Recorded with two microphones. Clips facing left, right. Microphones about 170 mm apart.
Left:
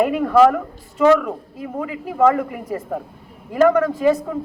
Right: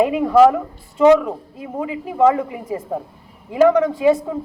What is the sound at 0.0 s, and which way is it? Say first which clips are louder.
A woman's voice: right 1 dB; 15° right (ahead or behind).